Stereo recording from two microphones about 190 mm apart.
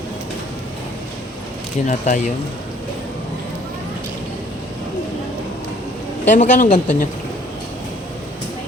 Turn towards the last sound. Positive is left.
turn(degrees=40)  # may be behind; listen again after turning